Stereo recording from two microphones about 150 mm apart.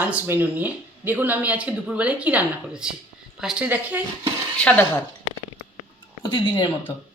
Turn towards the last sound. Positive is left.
turn(degrees=30)  # may be behind; listen again after turning